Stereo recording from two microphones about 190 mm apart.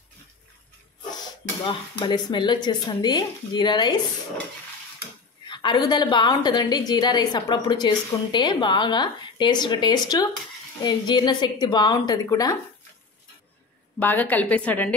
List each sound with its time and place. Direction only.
1.7 s a woman's voice: 25° left (ahead or behind)
5.5 s a woman's voice: 25° left (ahead or behind)
13.9 s a woman's voice: 10° left (ahead or behind)